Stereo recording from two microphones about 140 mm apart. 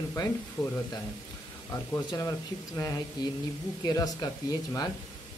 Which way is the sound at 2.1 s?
20° left (ahead or behind).